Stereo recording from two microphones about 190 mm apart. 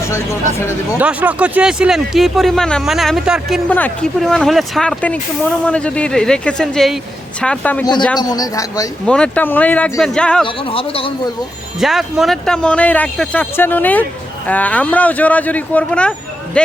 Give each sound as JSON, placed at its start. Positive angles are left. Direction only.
{"t": 0.0, "sound": "speech", "side_deg": 15}
{"t": 0.9, "sound": "speech", "side_deg": -10}
{"t": 3.7, "sound": "speech", "side_deg": 10}
{"t": 8.2, "sound": "a man's voice", "side_deg": 20}
{"t": 9.0, "sound": "speech", "side_deg": 5}
{"t": 10.4, "sound": "a man's voice", "side_deg": 30}
{"t": 11.8, "sound": "speech", "side_deg": 0}